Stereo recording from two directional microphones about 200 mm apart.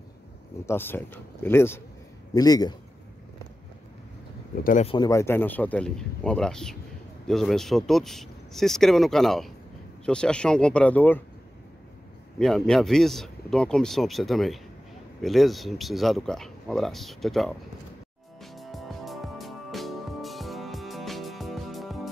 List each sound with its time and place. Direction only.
0.7 s a man's voice: 10° left (ahead or behind)
4.6 s speech: 35° left (ahead or behind)
4.9 s speech: 15° left (ahead or behind)
12.4 s speech: centre (ahead or behind)
18.4 s music: centre (ahead or behind)